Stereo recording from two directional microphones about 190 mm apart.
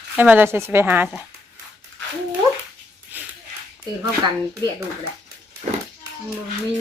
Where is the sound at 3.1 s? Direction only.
10° right (ahead or behind).